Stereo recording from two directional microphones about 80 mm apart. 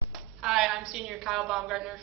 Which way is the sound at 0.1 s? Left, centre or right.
Centre.